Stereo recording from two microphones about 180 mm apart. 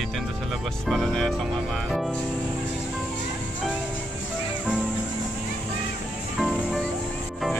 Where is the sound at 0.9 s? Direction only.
Centre (ahead or behind).